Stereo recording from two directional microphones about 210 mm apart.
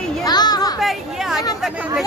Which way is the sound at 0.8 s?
Centre (ahead or behind).